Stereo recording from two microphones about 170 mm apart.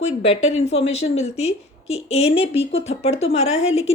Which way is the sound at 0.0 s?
40° left (ahead or behind).